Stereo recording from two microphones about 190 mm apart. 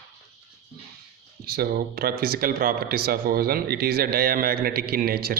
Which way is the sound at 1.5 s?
55° right (ahead or behind).